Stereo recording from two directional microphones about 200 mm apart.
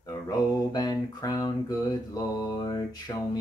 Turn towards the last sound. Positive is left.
turn(degrees=20)  # may be behind; listen again after turning